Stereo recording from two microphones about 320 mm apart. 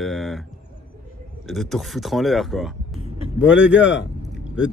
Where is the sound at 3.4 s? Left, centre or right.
Centre.